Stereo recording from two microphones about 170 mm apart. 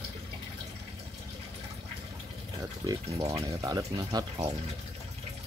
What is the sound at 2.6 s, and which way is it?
Speech, 20° right (ahead or behind).